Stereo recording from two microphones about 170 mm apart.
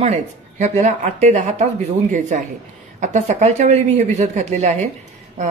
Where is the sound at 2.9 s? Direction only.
45° right (ahead or behind).